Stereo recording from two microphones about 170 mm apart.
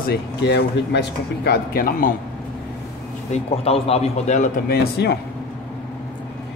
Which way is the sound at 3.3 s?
35° left (ahead or behind).